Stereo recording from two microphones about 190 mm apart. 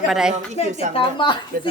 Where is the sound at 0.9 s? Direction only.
25° left (ahead or behind).